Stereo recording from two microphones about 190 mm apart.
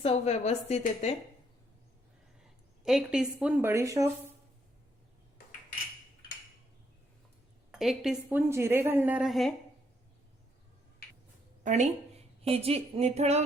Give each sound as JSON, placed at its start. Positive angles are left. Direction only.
{"t": 0.0, "sound": "a woman's voice", "side_deg": 35}
{"t": 2.4, "sound": "a sound", "side_deg": 0}
{"t": 3.3, "sound": "a woman's voice", "side_deg": -5}
{"t": 7.7, "sound": "a woman's voice", "side_deg": 0}
{"t": 11.6, "sound": "a woman's voice", "side_deg": -40}